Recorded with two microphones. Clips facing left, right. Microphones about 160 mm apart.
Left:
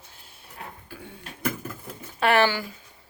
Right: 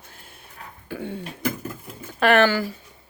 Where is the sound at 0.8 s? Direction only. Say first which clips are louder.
Right 11 dB; 75° right (ahead or behind).